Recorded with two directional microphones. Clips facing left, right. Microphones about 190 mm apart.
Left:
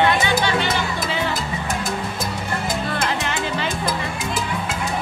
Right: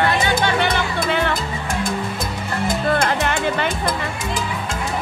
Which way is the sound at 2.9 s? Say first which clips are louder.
Right 4 dB; 50° right (ahead or behind).